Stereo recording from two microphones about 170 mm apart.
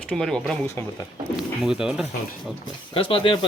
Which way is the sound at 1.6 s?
5° right (ahead or behind).